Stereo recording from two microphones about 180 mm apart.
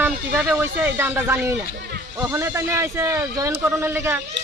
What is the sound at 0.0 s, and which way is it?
A man's voice, 10° right (ahead or behind).